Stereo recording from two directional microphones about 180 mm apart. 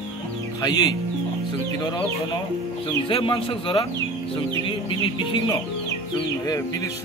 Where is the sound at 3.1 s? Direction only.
30° left (ahead or behind).